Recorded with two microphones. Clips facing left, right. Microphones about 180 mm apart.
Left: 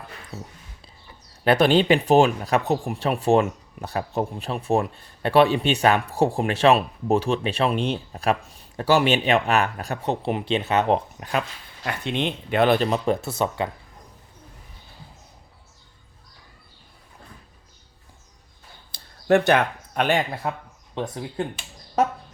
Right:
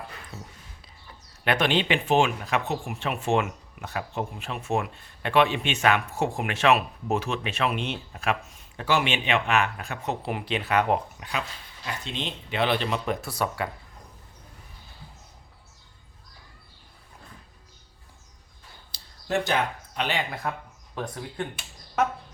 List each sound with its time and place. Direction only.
1.5 s speech: 35° left (ahead or behind)
11.2 s speech: 50° left (ahead or behind)
11.9 s speech: 60° left (ahead or behind); by 13.1 s 40° left (ahead or behind)
13.2 s speech: 25° left (ahead or behind)
18.9 s a sound: 60° left (ahead or behind)
20.4 s speech: 25° left (ahead or behind)
22.0 s speech: 35° left (ahead or behind)